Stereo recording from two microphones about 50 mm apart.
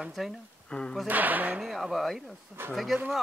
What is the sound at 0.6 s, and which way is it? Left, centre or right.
Speech, centre.